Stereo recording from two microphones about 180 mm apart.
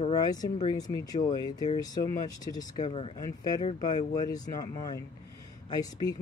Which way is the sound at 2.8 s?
35° left (ahead or behind).